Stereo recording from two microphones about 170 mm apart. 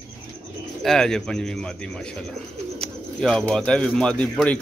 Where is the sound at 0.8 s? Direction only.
5° left (ahead or behind).